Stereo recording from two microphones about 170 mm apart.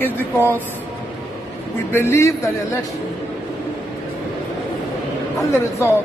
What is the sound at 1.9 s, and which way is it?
Speech, 15° left (ahead or behind).